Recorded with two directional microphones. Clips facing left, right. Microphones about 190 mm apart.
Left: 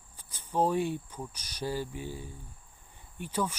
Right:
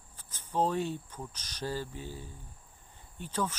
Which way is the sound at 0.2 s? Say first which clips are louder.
Left 2 dB; 10° left (ahead or behind).